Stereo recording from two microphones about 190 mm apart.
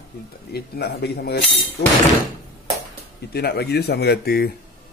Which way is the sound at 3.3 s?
55° left (ahead or behind).